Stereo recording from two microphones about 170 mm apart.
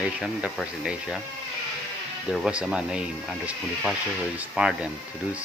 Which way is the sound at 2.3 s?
5° right (ahead or behind).